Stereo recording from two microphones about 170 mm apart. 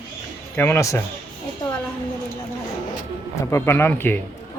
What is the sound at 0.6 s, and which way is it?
Speech, 15° left (ahead or behind).